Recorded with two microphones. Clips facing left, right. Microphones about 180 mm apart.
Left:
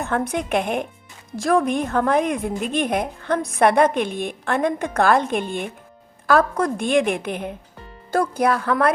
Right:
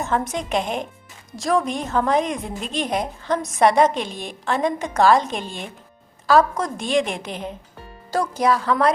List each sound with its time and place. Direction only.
0.0 s a woman's voice: 60° left (ahead or behind)